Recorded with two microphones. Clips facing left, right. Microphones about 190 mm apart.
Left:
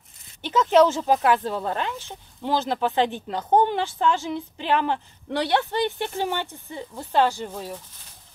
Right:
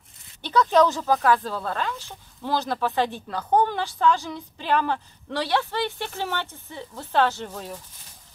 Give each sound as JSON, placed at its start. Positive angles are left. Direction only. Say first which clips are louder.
{"t": 0.4, "sound": "speech", "louder": "left 2 dB", "side_deg": 20}